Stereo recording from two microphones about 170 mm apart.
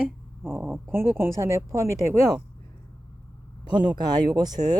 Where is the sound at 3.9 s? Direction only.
25° right (ahead or behind).